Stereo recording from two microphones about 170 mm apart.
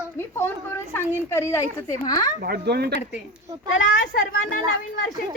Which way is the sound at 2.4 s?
70° right (ahead or behind).